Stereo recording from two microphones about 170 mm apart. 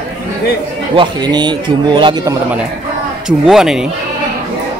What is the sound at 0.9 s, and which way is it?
A man's voice, 25° right (ahead or behind).